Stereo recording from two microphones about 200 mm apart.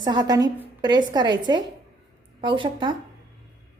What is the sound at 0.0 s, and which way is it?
A woman's voice, 20° right (ahead or behind).